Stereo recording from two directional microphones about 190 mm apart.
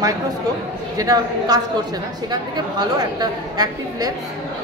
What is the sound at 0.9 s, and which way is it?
A woman's voice, 20° right (ahead or behind).